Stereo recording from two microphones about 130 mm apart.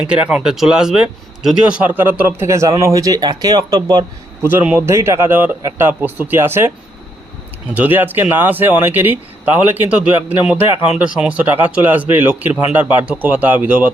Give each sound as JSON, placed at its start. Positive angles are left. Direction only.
{"t": 0.0, "sound": "speech", "side_deg": -10}
{"t": 4.4, "sound": "speech", "side_deg": -10}
{"t": 7.7, "sound": "speech", "side_deg": -10}